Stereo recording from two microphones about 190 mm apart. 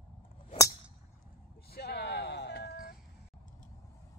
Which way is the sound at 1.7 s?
60° left (ahead or behind).